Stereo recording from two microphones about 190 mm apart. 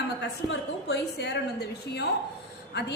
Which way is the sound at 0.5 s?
60° left (ahead or behind).